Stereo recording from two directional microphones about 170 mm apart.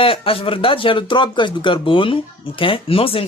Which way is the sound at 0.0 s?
35° left (ahead or behind).